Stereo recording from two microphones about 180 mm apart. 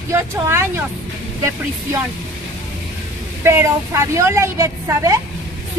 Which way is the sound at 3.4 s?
15° right (ahead or behind).